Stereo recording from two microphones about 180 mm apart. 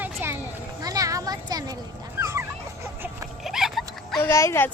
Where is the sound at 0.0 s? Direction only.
10° right (ahead or behind).